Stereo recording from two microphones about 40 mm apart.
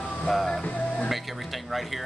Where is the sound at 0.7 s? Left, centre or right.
Left.